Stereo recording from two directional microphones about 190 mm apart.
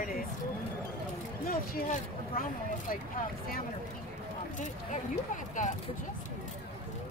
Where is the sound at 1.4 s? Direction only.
45° left (ahead or behind).